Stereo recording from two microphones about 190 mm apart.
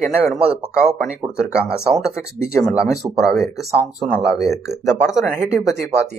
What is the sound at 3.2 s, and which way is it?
Speech, centre (ahead or behind).